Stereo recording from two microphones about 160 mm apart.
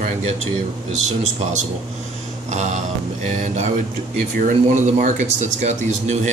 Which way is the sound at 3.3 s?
50° right (ahead or behind).